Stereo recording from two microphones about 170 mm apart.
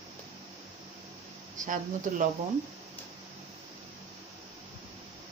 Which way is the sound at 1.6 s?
50° right (ahead or behind).